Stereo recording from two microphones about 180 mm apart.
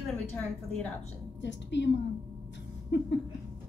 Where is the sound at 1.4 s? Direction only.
80° left.